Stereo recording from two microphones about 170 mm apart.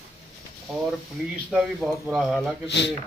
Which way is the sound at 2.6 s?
90° left.